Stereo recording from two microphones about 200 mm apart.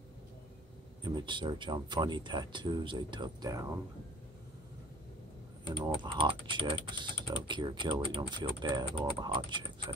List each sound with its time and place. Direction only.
1.0 s speech: 20° right (ahead or behind)
5.8 s speech: 25° right (ahead or behind)